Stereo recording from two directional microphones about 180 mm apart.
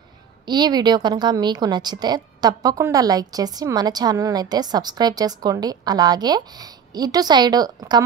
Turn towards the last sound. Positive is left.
turn(degrees=-20)  # may be behind; listen again after turning